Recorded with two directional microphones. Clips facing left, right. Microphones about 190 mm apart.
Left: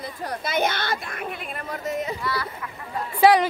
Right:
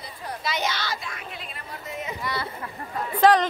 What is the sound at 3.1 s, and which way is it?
Speech, 10° left (ahead or behind).